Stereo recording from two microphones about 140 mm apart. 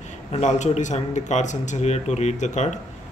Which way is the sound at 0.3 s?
55° left (ahead or behind).